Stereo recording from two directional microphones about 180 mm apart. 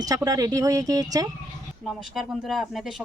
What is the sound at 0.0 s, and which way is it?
Speech, 20° right (ahead or behind).